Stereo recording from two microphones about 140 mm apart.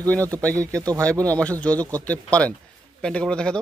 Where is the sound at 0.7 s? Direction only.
25° right (ahead or behind).